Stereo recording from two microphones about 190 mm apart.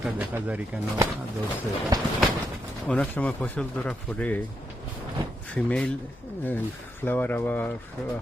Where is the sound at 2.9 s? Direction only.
5° left (ahead or behind).